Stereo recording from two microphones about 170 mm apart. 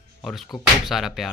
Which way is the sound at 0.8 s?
Centre (ahead or behind).